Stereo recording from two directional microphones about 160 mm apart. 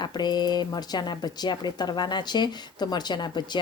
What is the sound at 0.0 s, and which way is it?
Speech, 25° left (ahead or behind).